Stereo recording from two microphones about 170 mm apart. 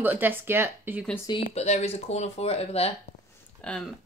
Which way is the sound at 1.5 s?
40° left (ahead or behind).